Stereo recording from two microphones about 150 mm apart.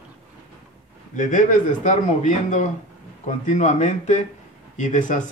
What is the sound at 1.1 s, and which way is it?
Speech, 60° left (ahead or behind).